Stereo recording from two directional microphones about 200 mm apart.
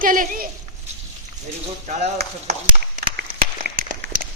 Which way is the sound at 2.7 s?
45° right (ahead or behind).